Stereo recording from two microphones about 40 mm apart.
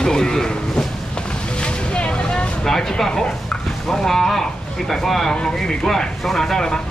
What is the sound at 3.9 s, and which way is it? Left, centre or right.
Speech, centre.